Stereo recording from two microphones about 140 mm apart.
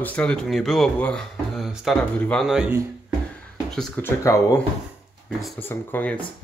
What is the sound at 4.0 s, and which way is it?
Speech, 20° left (ahead or behind).